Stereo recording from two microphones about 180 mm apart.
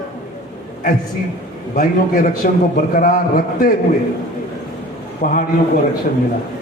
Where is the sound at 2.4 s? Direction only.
50° left (ahead or behind).